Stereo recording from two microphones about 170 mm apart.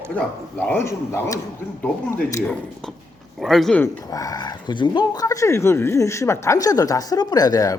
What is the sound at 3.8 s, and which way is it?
Speech, 20° left (ahead or behind).